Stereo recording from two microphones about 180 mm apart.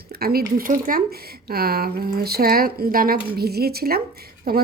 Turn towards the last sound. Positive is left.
turn(degrees=-60)  # may be behind; listen again after turning